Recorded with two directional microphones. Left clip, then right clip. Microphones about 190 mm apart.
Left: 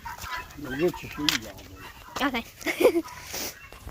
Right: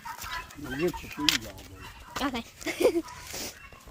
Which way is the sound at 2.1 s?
5° left (ahead or behind).